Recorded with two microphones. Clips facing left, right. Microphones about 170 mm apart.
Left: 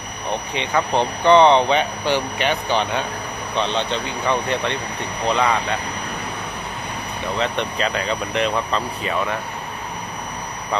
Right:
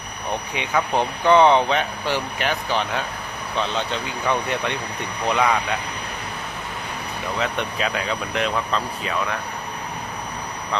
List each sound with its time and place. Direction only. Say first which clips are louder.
0.5 s speech: left 2 dB; 10° right (ahead or behind)
7.3 s speech: left 2 dB; 5° right (ahead or behind)